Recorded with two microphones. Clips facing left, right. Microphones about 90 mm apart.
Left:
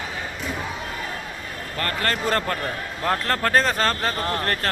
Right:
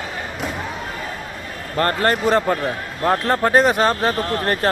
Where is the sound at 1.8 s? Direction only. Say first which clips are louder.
Right 8 dB; 30° right (ahead or behind).